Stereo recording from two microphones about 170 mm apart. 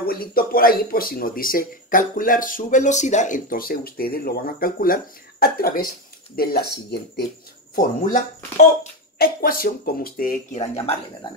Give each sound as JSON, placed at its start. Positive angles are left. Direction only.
{"t": 0.0, "sound": "speech", "side_deg": 60}
{"t": 7.7, "sound": "speech", "side_deg": 50}